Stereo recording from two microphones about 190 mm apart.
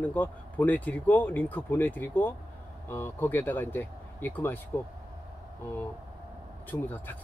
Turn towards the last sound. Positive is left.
turn(degrees=10)  # may be behind; listen again after turning